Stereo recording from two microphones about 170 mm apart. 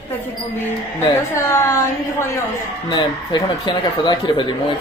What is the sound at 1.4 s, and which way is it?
Speech, 15° left (ahead or behind).